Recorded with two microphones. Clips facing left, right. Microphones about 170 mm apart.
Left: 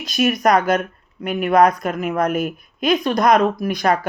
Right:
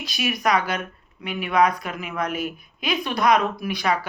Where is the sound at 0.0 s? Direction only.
45° left (ahead or behind).